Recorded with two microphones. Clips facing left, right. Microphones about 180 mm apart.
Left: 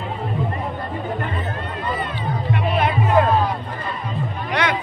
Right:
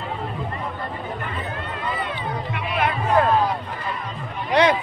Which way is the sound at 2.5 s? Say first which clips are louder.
Left 6 dB; 35° left (ahead or behind).